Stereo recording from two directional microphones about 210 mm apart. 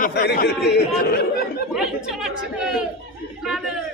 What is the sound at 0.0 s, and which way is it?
Speech, 50° left (ahead or behind).